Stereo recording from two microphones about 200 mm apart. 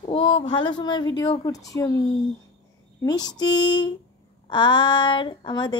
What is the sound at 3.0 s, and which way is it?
Speech, 20° left (ahead or behind).